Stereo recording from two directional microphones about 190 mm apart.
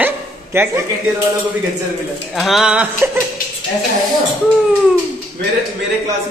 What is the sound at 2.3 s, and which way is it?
Speech, centre (ahead or behind).